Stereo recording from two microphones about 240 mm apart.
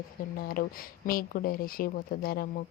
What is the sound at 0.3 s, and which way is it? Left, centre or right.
Speech, left.